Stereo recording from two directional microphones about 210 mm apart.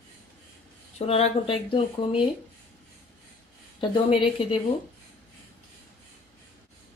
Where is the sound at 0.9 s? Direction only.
30° left (ahead or behind).